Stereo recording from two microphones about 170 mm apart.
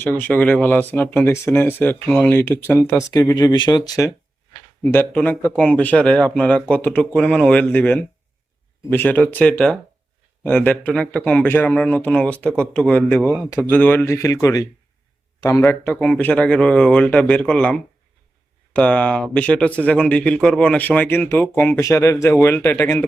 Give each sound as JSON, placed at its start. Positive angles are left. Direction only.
{"t": 0.0, "sound": "speech", "side_deg": 10}